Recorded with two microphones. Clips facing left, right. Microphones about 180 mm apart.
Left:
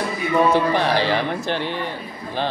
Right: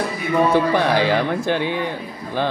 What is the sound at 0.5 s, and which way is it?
A man's voice, 50° right (ahead or behind).